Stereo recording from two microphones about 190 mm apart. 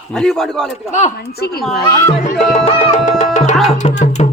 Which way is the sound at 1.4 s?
55° left (ahead or behind).